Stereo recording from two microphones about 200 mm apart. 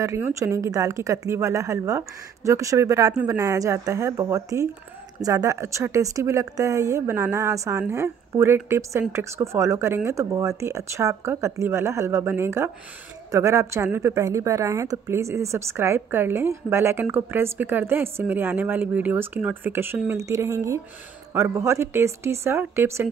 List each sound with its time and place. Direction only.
0.0 s a woman's voice: 15° right (ahead or behind)